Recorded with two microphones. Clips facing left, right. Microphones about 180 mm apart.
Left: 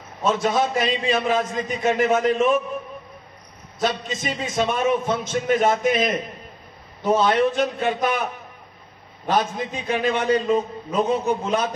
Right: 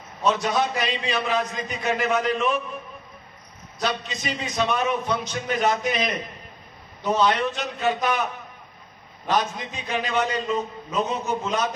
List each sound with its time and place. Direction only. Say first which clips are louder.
0.2 s a man's voice: left 2 dB; 50° left (ahead or behind)
3.8 s a man's voice: left 3 dB; 45° left (ahead or behind)
9.3 s a man's voice: left 2 dB; 50° left (ahead or behind)